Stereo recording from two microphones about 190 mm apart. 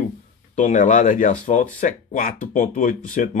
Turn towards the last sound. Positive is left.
turn(degrees=45)  # may be behind; listen again after turning